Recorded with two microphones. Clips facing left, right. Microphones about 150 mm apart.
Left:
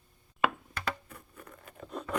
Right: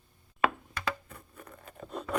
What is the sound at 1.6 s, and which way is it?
Scrape, 30° right (ahead or behind).